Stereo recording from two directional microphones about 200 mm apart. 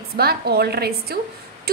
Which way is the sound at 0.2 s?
50° right (ahead or behind).